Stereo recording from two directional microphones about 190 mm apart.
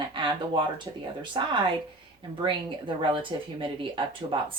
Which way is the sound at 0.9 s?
20° right (ahead or behind).